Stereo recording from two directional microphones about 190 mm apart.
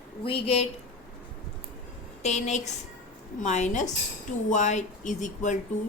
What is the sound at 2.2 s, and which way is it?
Speech, 35° left (ahead or behind).